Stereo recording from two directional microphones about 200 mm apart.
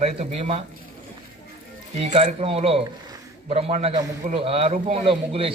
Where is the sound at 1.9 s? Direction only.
30° right (ahead or behind).